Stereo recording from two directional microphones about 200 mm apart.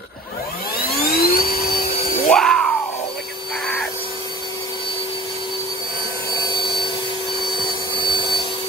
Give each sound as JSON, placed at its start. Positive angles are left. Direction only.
{"t": 0.8, "sound": "vacuum cleaner", "side_deg": 50}
{"t": 2.2, "sound": "a sound", "side_deg": 5}
{"t": 6.3, "sound": "vacuum cleaner", "side_deg": 20}
{"t": 8.0, "sound": "vacuum cleaner", "side_deg": 20}